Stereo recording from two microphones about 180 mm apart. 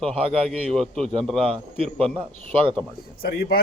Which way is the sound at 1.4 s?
30° right (ahead or behind).